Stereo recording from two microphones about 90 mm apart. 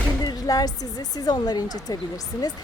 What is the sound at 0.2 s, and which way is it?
A woman's voice, 45° left (ahead or behind).